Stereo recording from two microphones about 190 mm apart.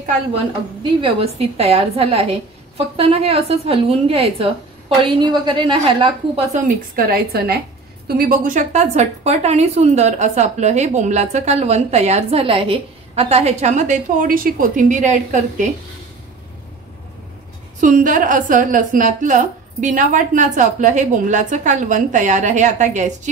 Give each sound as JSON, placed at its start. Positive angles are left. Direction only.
{"t": 1.0, "sound": "a woman's voice", "side_deg": -30}
{"t": 6.5, "sound": "a woman's voice", "side_deg": -45}
{"t": 17.7, "sound": "a woman's voice", "side_deg": -45}